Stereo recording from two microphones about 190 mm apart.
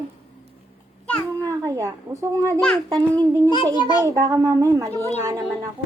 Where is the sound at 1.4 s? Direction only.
15° right (ahead or behind).